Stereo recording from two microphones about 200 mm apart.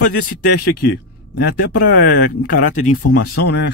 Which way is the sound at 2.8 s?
45° left (ahead or behind).